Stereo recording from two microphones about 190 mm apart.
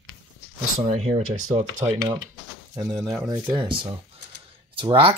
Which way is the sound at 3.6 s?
25° right (ahead or behind).